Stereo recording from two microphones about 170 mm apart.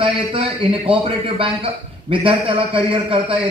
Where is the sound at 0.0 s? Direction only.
30° right (ahead or behind).